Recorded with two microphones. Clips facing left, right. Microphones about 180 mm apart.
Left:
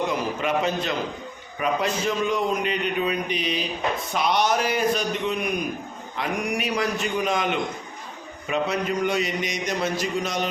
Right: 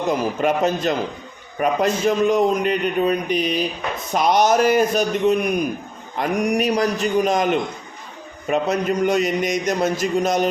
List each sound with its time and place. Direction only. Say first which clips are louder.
0.1 s a man's voice: right 5 dB; 45° right (ahead or behind)